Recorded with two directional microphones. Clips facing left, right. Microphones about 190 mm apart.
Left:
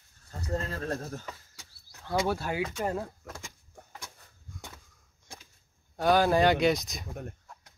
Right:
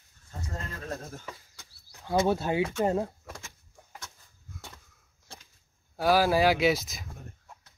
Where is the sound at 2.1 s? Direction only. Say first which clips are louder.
Right 4 dB; 25° right (ahead or behind).